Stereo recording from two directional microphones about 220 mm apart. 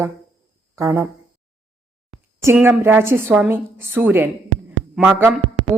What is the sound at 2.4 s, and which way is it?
A woman's voice, 10° right (ahead or behind).